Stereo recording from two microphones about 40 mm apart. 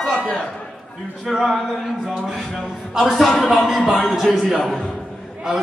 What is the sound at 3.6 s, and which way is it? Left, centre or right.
Speech, centre.